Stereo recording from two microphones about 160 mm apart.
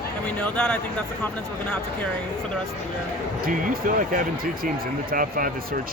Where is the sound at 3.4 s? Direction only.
60° right (ahead or behind).